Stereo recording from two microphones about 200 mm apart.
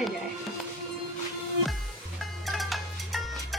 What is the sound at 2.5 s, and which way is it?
Music, centre (ahead or behind).